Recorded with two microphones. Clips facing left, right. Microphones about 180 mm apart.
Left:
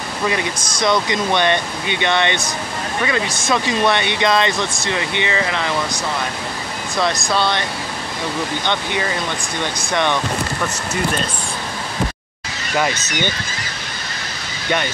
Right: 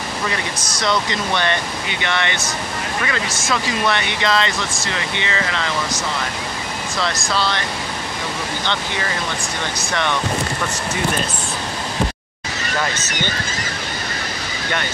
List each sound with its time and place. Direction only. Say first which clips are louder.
0.8 s speech: left 3 dB; 15° left (ahead or behind)
3.4 s speech: left 3 dB; 15° left (ahead or behind)
7.0 s speech: left 4 dB; 15° left (ahead or behind)
12.7 s speech: left 4 dB; 15° left (ahead or behind)